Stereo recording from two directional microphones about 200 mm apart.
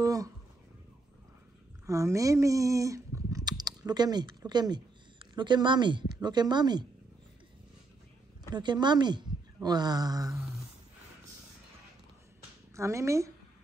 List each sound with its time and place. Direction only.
0.0 s a sound: 15° right (ahead or behind)
1.9 s speech: 15° right (ahead or behind)
8.5 s speech: 20° right (ahead or behind)
12.7 s a woman's voice: 15° right (ahead or behind)